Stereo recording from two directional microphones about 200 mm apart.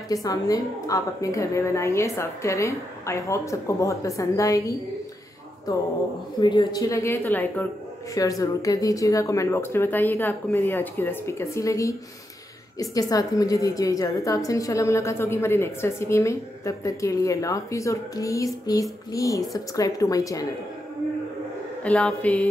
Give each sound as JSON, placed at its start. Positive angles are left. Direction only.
{"t": 0.1, "sound": "a woman's voice", "side_deg": 20}
{"t": 6.4, "sound": "a woman's voice", "side_deg": 20}
{"t": 21.8, "sound": "a woman's voice", "side_deg": 5}